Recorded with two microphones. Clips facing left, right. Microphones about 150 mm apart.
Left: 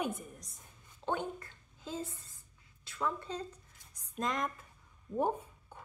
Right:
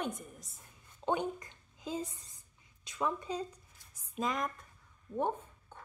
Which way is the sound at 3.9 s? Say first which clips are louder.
Right 1 dB; centre (ahead or behind).